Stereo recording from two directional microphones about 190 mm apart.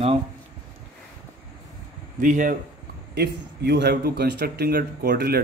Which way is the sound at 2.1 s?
45° right (ahead or behind).